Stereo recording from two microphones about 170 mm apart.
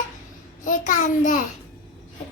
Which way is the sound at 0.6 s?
50° left (ahead or behind).